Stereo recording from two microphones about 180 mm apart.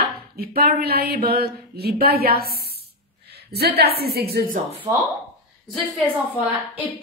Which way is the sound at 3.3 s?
65° right (ahead or behind).